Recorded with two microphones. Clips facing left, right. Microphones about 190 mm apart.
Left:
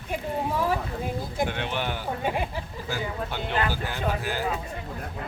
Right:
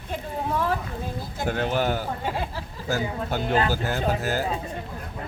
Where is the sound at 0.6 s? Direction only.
15° left (ahead or behind).